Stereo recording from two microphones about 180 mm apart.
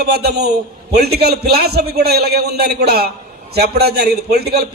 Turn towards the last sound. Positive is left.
turn(degrees=-60)  # may be behind; listen again after turning